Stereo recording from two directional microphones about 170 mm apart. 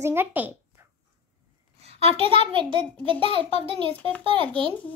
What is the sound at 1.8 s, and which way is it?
A child's voice, 35° right (ahead or behind).